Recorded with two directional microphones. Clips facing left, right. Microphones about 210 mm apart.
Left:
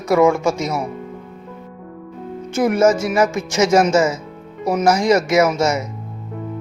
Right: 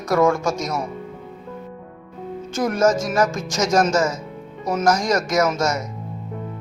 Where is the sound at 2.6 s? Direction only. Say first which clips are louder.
Left 4 dB; 5° left (ahead or behind).